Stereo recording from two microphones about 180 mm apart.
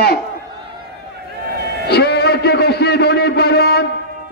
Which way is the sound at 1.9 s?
65° left (ahead or behind).